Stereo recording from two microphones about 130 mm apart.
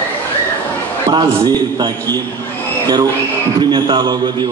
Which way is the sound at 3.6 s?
35° right (ahead or behind).